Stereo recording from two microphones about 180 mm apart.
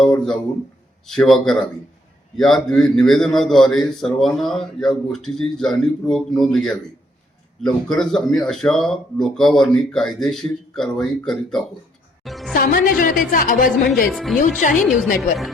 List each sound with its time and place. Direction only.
0.0 s a man's voice: 5° left (ahead or behind)
12.5 s a woman's voice: 55° left (ahead or behind)
13.9 s a man's voice: centre (ahead or behind)
14.6 s a woman's voice: 50° left (ahead or behind)
14.9 s a man's voice: centre (ahead or behind)